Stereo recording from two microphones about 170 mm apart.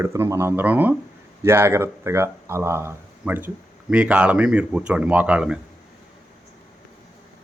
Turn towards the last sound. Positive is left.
turn(degrees=-5)  # may be behind; listen again after turning